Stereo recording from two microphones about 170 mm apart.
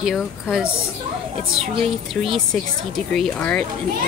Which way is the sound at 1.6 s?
35° right (ahead or behind).